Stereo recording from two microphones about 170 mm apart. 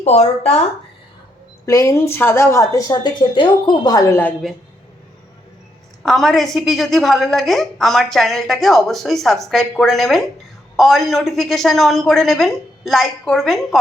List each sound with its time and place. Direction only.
0.0 s speech: 40° left (ahead or behind)
1.6 s speech: 15° left (ahead or behind)
6.0 s a woman's voice: centre (ahead or behind)